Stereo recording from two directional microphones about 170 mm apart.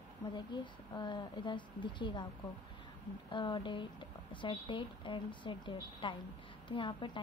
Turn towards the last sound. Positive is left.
turn(degrees=30)  # may be behind; listen again after turning